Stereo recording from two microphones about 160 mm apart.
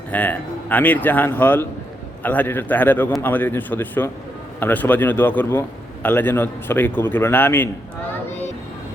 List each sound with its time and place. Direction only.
0.1 s a man's voice: 10° left (ahead or behind)